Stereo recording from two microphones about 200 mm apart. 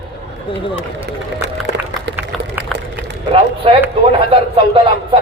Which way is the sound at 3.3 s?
30° right (ahead or behind).